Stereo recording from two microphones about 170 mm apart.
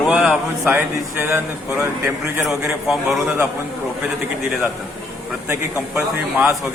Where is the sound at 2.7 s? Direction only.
Centre (ahead or behind).